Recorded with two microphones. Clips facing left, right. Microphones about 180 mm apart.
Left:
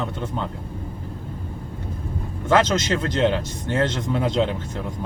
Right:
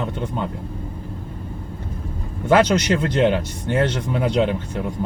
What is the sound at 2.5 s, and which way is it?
Speech, 15° right (ahead or behind).